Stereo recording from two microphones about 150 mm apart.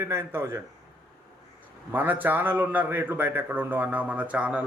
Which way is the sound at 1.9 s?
10° right (ahead or behind).